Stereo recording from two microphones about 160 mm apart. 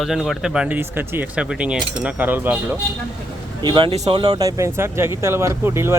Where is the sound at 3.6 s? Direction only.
30° right (ahead or behind); by 5.9 s 15° right (ahead or behind).